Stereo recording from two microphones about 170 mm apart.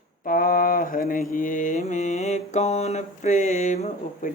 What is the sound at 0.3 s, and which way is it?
Mantra, 55° left (ahead or behind).